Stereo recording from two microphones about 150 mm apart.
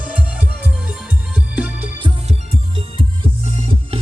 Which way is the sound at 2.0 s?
35° right (ahead or behind).